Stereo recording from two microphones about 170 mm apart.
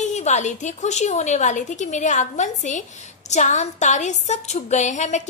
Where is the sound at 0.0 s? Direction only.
40° left (ahead or behind).